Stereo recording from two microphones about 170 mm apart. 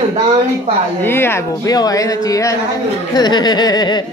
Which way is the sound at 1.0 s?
15° left (ahead or behind).